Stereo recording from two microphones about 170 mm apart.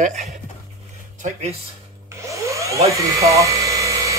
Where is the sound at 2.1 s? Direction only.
15° right (ahead or behind).